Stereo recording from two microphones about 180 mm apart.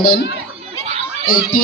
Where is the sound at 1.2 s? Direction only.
50° left (ahead or behind).